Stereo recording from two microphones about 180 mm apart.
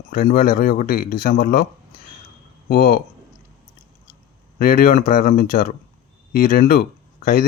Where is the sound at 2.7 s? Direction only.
55° left (ahead or behind).